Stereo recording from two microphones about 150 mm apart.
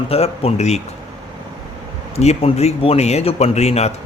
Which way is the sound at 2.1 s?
45° left (ahead or behind).